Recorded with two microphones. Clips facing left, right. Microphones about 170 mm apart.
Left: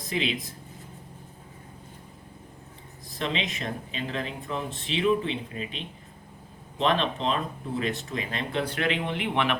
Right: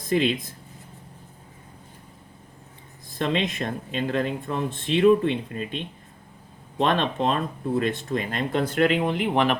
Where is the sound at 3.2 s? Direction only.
50° right (ahead or behind).